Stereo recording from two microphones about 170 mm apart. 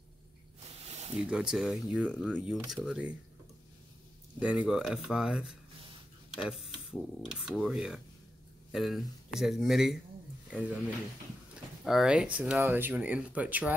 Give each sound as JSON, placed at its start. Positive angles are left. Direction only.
{"t": 0.8, "sound": "a sound", "side_deg": -40}
{"t": 1.2, "sound": "speech", "side_deg": -5}
{"t": 4.4, "sound": "speech", "side_deg": -5}
{"t": 11.8, "sound": "speech", "side_deg": 0}